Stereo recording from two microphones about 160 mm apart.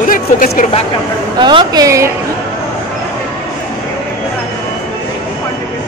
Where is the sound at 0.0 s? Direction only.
60° left (ahead or behind).